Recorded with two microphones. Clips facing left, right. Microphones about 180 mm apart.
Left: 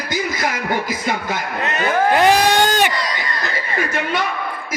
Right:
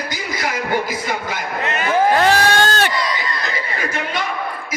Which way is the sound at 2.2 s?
15° left (ahead or behind).